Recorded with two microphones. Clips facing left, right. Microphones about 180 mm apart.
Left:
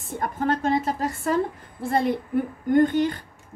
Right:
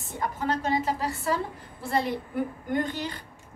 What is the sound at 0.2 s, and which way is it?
A woman's voice, 50° left (ahead or behind).